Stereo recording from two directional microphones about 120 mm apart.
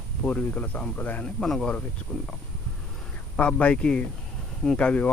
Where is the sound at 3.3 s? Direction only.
10° left (ahead or behind).